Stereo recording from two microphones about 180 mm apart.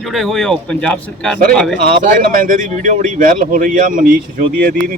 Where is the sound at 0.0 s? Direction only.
Centre (ahead or behind).